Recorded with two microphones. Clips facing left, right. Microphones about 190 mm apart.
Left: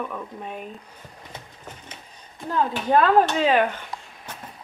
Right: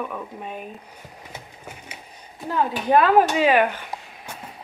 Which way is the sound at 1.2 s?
10° right (ahead or behind).